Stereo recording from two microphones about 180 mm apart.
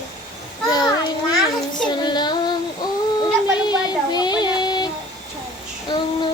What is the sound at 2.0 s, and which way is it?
Child singing, 25° left (ahead or behind).